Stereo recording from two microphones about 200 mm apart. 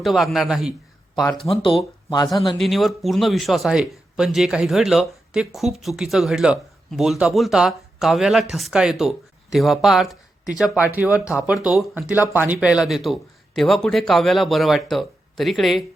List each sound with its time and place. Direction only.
0.0 s speech: centre (ahead or behind)
2.0 s speech: 20° left (ahead or behind)
2.6 s speech: centre (ahead or behind)